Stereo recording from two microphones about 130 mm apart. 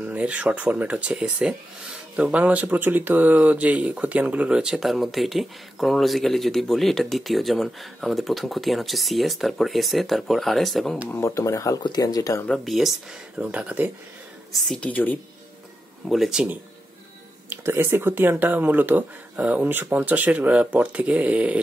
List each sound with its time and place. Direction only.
0.0 s speech: 10° right (ahead or behind)
11.1 s speech: 20° left (ahead or behind)
12.4 s speech: centre (ahead or behind)
14.7 s speech: 10° left (ahead or behind)
16.1 s speech: 5° right (ahead or behind)
17.5 s speech: 20° right (ahead or behind)